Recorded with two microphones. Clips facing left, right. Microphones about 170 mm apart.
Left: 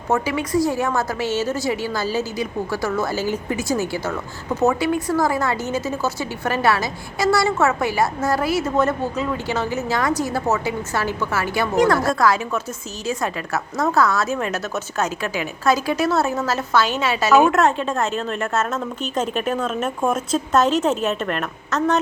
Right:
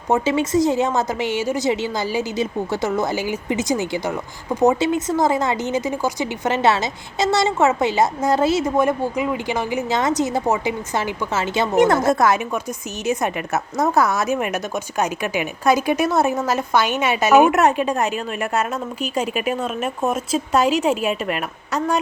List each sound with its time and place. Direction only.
0.1 s a woman's voice: 25° right (ahead or behind)
8.7 s a woman's voice: 15° right (ahead or behind)